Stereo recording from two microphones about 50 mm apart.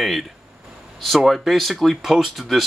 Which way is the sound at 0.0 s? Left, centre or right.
Centre.